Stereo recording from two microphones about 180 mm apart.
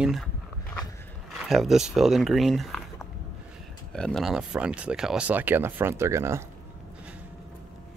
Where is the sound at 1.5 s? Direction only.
Centre (ahead or behind).